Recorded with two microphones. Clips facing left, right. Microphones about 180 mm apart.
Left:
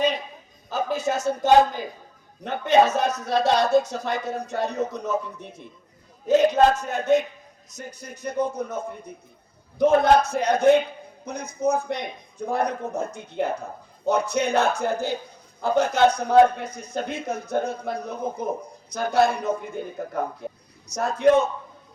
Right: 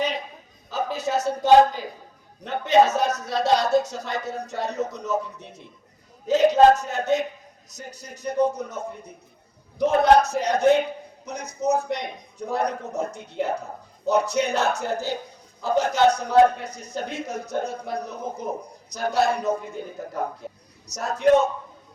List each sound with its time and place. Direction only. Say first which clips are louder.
0.7 s speech: left 1 dB; 50° left (ahead or behind)
20.8 s speech: left 3 dB; 55° left (ahead or behind)